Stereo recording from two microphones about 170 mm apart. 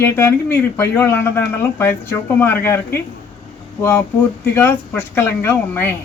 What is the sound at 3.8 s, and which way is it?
Speech, 15° left (ahead or behind).